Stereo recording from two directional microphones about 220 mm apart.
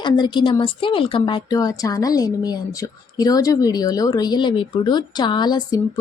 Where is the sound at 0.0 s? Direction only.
20° left (ahead or behind).